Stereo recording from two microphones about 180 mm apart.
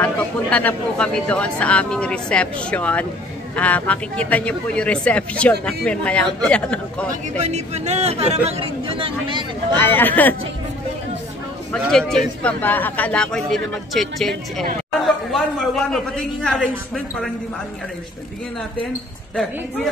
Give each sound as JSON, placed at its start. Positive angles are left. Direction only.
{"t": 0.0, "sound": "speech", "side_deg": 5}
{"t": 7.3, "sound": "speech", "side_deg": -40}
{"t": 9.8, "sound": "speech", "side_deg": 10}
{"t": 11.7, "sound": "a man's voice", "side_deg": 5}